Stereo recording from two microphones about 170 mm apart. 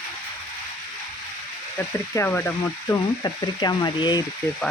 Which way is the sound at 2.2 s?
10° left (ahead or behind).